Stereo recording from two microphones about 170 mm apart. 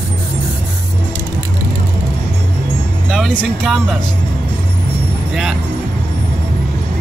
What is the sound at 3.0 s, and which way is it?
Music, centre (ahead or behind).